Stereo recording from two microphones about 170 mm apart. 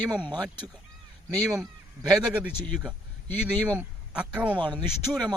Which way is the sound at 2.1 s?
5° right (ahead or behind).